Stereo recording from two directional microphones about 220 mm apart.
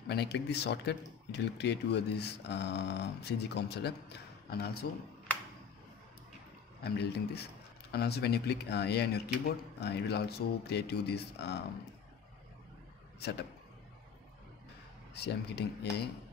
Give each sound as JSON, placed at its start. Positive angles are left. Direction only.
{"t": 0.1, "sound": "speech", "side_deg": 50}
{"t": 6.8, "sound": "speech", "side_deg": 50}
{"t": 13.2, "sound": "speech", "side_deg": 50}
{"t": 15.1, "sound": "speech", "side_deg": 50}